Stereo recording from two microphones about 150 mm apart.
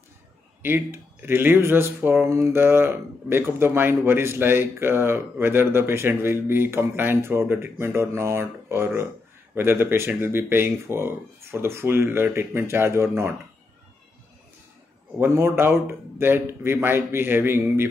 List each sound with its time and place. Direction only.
0.6 s speech: 15° right (ahead or behind)
15.1 s speech: 15° right (ahead or behind)